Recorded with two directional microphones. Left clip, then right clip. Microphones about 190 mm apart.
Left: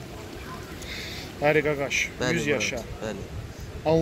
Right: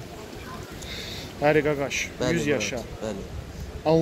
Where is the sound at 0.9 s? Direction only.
20° right (ahead or behind).